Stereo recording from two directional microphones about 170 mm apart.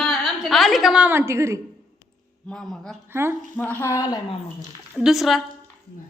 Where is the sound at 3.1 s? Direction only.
15° right (ahead or behind).